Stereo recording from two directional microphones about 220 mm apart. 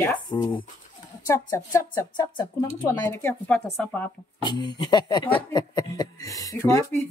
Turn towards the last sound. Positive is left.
turn(degrees=15)  # may be behind; listen again after turning